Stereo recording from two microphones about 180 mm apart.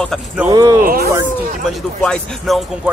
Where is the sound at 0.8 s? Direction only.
55° right (ahead or behind).